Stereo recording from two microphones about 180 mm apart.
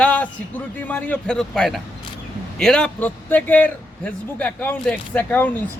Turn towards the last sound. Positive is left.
turn(degrees=10)  # may be behind; listen again after turning